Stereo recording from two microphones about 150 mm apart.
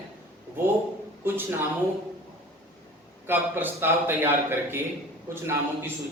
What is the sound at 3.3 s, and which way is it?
Speech, 15° right (ahead or behind).